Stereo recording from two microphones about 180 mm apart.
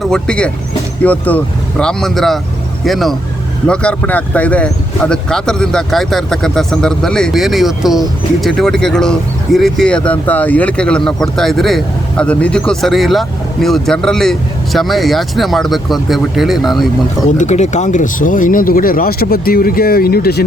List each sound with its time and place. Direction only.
0.1 s speech: 5° left (ahead or behind)
17.3 s speech: 40° left (ahead or behind); by 20.4 s 60° left (ahead or behind)